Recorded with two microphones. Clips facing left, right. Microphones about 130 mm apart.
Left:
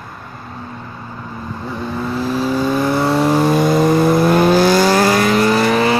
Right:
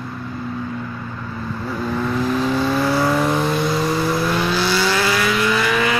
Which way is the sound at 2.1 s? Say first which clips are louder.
Left 2 dB; 35° left (ahead or behind).